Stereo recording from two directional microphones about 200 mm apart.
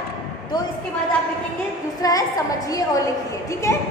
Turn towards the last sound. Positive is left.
turn(degrees=15)  # may be behind; listen again after turning